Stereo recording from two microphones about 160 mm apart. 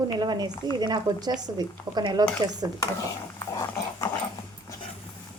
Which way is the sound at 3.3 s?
20° left (ahead or behind).